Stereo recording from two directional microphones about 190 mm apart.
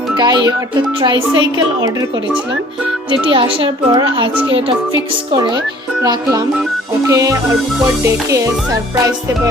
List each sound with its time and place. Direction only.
0.2 s a child's voice: 20° right (ahead or behind)
3.1 s a child's voice: 25° right (ahead or behind)
5.3 s a child's voice: 20° right (ahead or behind)
7.1 s music: 15° right (ahead or behind)